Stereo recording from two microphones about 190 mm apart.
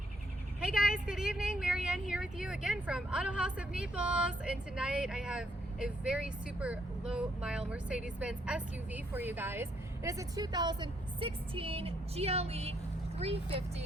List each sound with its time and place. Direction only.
0.6 s speech: 5° right (ahead or behind); by 13.8 s 30° right (ahead or behind)